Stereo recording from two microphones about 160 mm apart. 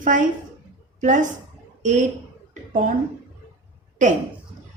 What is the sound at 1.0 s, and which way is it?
A woman's voice, 50° right (ahead or behind).